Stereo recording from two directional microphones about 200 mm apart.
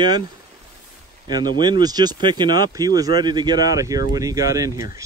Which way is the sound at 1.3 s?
20° right (ahead or behind).